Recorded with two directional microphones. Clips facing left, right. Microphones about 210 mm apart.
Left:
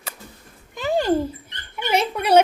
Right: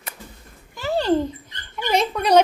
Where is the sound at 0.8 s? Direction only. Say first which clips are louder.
Even; 15° left (ahead or behind).